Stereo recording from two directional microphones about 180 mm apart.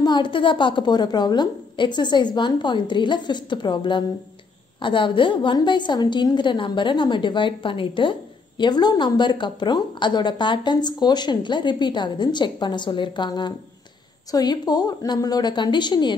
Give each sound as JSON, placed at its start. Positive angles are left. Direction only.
{"t": 0.0, "sound": "a woman's voice", "side_deg": 25}